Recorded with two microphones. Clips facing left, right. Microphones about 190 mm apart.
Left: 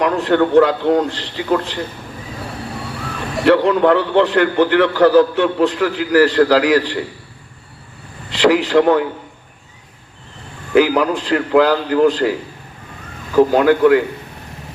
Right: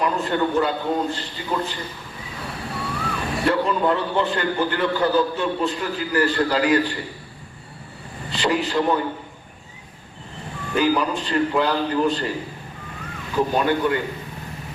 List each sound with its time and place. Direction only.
0.0 s a man's voice: 80° left
3.4 s a man's voice: 80° left
8.3 s a man's voice: 90° left
10.8 s a man's voice: 90° left